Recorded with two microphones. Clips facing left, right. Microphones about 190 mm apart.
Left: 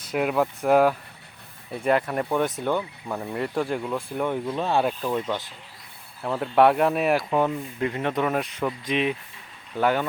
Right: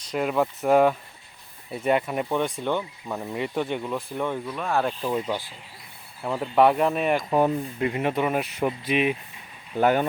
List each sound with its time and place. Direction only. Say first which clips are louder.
0.0 s speech: left 1 dB; 5° left (ahead or behind)
2.6 s speech: left 1 dB; 5° left (ahead or behind)
4.4 s speech: left 3 dB; 25° left (ahead or behind)
5.0 s speech: even; 5° right (ahead or behind)
7.3 s speech: right 2 dB; 15° right (ahead or behind)